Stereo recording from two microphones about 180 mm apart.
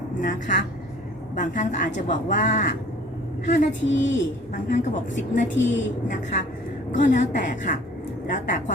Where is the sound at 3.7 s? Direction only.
90° left.